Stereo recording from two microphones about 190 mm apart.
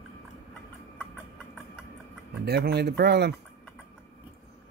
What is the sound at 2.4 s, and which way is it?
Speech, 60° right (ahead or behind).